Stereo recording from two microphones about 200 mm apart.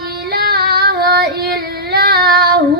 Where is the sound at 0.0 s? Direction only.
50° right (ahead or behind).